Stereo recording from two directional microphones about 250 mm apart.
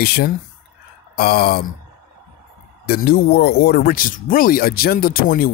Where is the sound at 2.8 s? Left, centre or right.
Left.